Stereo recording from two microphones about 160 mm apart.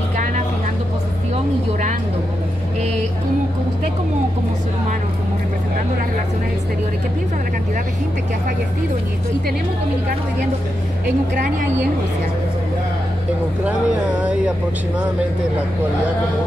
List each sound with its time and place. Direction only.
1.3 s speech: 45° right (ahead or behind)
11.1 s speech: 70° right (ahead or behind)
13.7 s speech: 5° right (ahead or behind)